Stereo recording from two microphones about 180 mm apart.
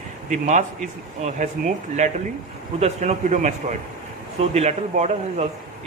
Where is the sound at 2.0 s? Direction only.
40° right (ahead or behind).